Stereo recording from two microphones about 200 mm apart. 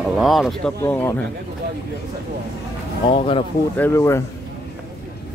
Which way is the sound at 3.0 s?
25° left (ahead or behind).